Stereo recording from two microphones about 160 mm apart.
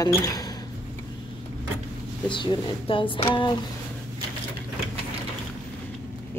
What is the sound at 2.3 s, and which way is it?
Speech, 30° left (ahead or behind).